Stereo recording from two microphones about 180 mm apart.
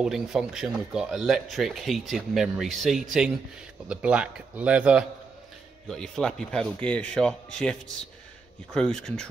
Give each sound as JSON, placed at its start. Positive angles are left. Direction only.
{"t": 0.0, "sound": "speech", "side_deg": -5}
{"t": 8.7, "sound": "speech", "side_deg": 5}